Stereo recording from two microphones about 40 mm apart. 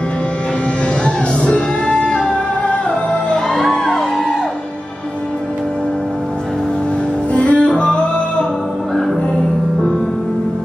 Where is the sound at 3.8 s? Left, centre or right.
Centre.